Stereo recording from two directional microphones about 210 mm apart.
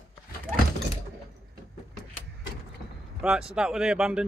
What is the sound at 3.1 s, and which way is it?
Speech, 5° right (ahead or behind).